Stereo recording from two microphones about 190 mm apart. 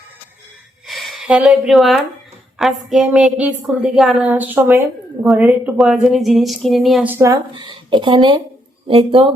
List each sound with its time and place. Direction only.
0.9 s a woman's voice: centre (ahead or behind); by 9.3 s 30° right (ahead or behind)